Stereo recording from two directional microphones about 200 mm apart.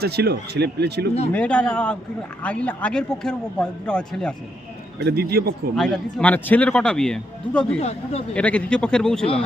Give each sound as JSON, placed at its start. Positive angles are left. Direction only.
{"t": 0.0, "sound": "speech", "side_deg": -55}
{"t": 1.3, "sound": "a man's voice", "side_deg": 5}
{"t": 4.9, "sound": "speech", "side_deg": -55}
{"t": 5.7, "sound": "a man's voice", "side_deg": 5}
{"t": 7.8, "sound": "speech", "side_deg": 30}
{"t": 8.3, "sound": "a man's voice", "side_deg": 5}